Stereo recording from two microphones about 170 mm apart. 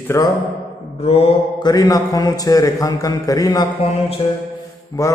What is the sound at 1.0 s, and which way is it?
A man's voice, 35° left (ahead or behind).